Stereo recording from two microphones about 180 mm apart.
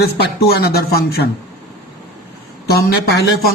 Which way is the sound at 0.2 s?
60° left (ahead or behind).